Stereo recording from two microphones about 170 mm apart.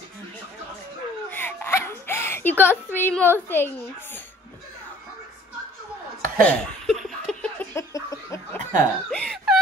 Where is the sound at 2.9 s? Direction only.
10° left (ahead or behind).